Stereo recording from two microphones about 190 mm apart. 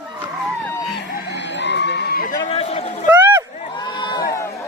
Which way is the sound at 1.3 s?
70° left (ahead or behind).